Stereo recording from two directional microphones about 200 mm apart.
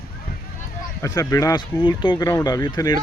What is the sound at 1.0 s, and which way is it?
Speech, 15° left (ahead or behind).